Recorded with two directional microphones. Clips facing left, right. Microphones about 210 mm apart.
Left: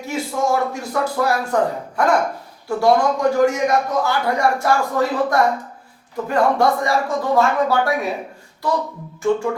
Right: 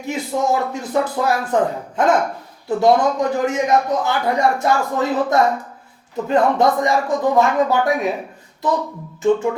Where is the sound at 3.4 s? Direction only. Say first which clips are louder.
Even; 20° right (ahead or behind).